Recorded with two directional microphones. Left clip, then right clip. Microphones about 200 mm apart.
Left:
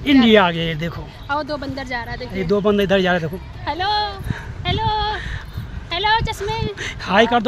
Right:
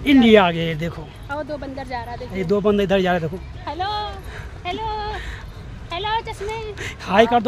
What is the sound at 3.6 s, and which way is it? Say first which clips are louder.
Speech: left 5 dB; 50° left (ahead or behind).